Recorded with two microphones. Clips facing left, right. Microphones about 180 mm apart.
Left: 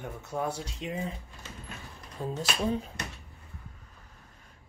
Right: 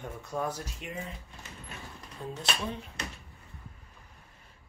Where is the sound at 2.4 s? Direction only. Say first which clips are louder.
Left 5 dB; 40° left (ahead or behind).